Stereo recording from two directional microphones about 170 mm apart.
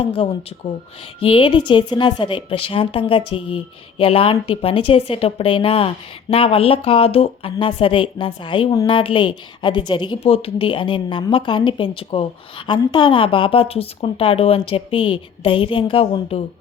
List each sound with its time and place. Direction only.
0.0 s a woman's voice: 35° left (ahead or behind)